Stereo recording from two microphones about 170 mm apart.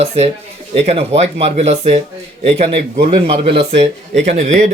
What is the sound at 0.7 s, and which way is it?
Speech, 35° right (ahead or behind).